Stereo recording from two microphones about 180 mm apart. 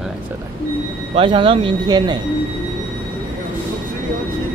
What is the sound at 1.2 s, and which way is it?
Speech, 30° right (ahead or behind).